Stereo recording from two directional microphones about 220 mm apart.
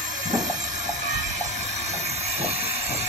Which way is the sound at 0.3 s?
35° right (ahead or behind).